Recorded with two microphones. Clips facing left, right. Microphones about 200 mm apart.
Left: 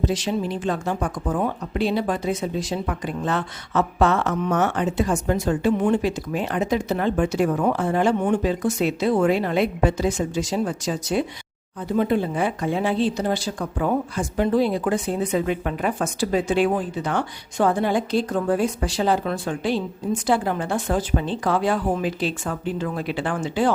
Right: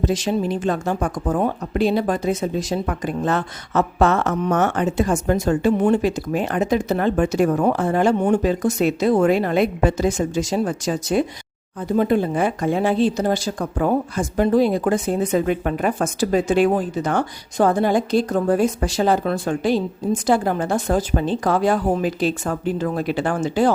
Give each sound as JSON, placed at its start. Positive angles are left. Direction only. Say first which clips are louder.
{"t": 0.0, "sound": "speech", "louder": "right 3 dB", "side_deg": -45}